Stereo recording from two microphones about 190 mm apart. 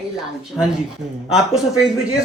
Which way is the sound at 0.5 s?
5° left (ahead or behind).